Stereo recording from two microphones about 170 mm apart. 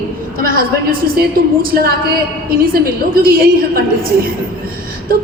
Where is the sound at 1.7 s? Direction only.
60° right (ahead or behind).